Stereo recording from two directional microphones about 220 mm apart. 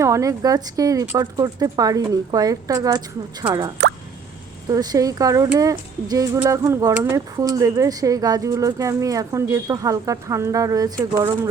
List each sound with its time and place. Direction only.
0.0 s speech: 15° right (ahead or behind)
3.8 s plop: 50° right (ahead or behind)
4.7 s speech: 15° right (ahead or behind)